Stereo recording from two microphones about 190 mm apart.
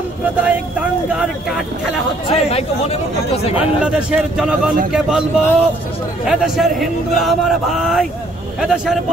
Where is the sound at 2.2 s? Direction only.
30° left (ahead or behind).